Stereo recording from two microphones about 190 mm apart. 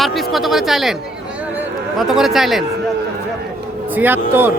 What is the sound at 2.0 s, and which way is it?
Speech, centre (ahead or behind).